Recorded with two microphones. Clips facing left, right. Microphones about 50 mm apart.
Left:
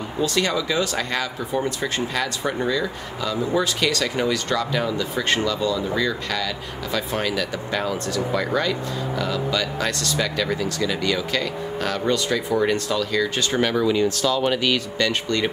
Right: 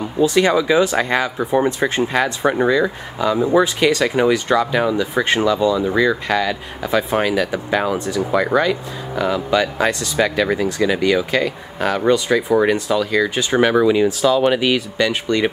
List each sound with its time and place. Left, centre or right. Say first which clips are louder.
0.2 s speech: right 8 dB; centre